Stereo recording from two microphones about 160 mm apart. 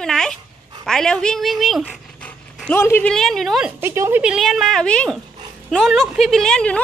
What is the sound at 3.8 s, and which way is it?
Speech, 15° right (ahead or behind).